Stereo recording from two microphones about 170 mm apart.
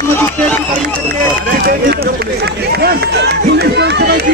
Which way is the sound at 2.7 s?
70° right (ahead or behind).